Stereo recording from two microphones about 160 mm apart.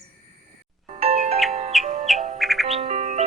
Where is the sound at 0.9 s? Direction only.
40° right (ahead or behind).